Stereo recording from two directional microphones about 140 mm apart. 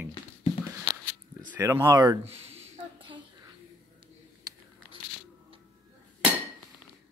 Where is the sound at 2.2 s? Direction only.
50° right (ahead or behind).